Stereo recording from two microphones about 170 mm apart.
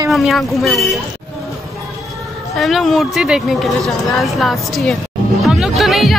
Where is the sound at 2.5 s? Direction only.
Centre (ahead or behind).